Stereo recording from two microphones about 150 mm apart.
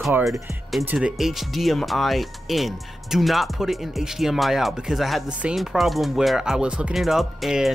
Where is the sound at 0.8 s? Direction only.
5° right (ahead or behind).